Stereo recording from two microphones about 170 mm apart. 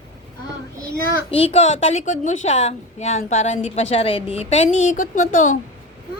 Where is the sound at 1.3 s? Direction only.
40° left (ahead or behind).